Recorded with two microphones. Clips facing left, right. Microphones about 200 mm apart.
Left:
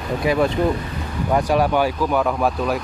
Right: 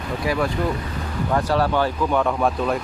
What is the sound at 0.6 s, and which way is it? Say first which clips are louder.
Speech: left 4 dB; 20° left (ahead or behind).